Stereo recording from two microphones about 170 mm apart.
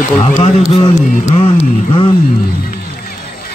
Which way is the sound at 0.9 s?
40° left (ahead or behind).